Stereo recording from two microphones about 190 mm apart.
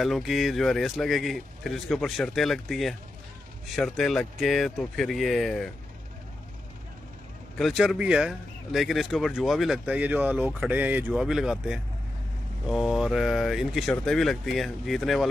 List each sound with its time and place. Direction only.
0.0 s speech: centre (ahead or behind)
7.5 s speech: centre (ahead or behind)